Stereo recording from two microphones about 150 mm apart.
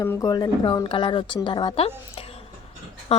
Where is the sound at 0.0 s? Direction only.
20° left (ahead or behind).